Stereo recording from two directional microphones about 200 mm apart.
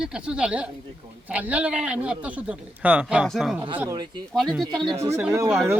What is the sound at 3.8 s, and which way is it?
Speech, 20° right (ahead or behind).